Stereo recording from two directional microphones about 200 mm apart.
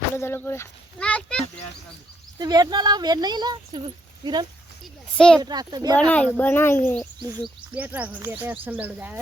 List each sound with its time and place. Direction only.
0.2 s speech: 10° left (ahead or behind)
2.4 s speech: 20° right (ahead or behind)
5.1 s speech: 5° left (ahead or behind)
5.4 s speech: 20° right (ahead or behind)
6.1 s speech: 5° left (ahead or behind)
7.4 s speech: 5° right (ahead or behind)